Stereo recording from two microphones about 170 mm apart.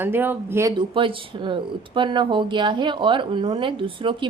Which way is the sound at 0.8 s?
30° right (ahead or behind).